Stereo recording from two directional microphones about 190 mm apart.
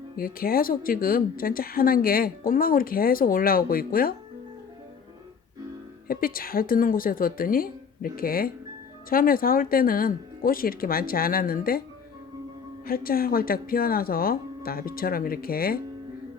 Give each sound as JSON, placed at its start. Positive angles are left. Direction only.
{"t": 0.2, "sound": "speech", "side_deg": 50}
{"t": 6.1, "sound": "speech", "side_deg": 50}
{"t": 12.8, "sound": "speech", "side_deg": 50}